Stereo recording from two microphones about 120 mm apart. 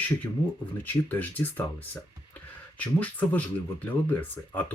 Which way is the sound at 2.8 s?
15° left (ahead or behind).